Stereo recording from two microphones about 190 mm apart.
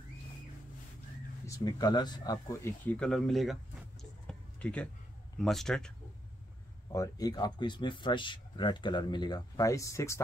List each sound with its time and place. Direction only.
1.4 s speech: 20° left (ahead or behind)
2.9 s speech: 5° left (ahead or behind)
4.3 s a sound: 5° left (ahead or behind)
5.4 s speech: centre (ahead or behind)
6.9 s speech: 20° left (ahead or behind)